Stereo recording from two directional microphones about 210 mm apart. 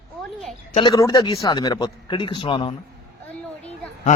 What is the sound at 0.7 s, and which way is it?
Speech, 20° left (ahead or behind).